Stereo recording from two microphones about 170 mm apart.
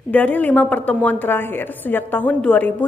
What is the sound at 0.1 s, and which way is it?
A woman's voice, 10° left (ahead or behind).